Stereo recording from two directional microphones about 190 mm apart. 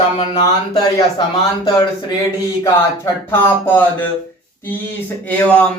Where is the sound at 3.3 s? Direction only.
10° left (ahead or behind).